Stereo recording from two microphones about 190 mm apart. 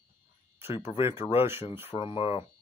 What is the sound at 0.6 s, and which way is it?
A man's voice, 30° left (ahead or behind).